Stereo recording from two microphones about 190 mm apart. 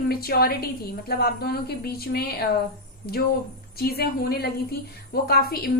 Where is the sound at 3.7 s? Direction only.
55° left (ahead or behind).